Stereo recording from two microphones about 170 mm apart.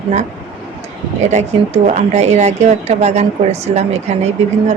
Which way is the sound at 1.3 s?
40° right (ahead or behind).